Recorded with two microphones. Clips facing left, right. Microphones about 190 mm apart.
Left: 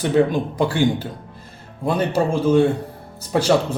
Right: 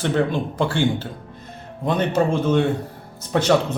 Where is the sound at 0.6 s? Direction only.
15° left (ahead or behind).